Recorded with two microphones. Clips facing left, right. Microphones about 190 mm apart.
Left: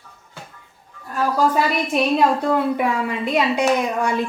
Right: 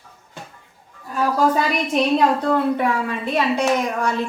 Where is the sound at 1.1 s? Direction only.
Centre (ahead or behind).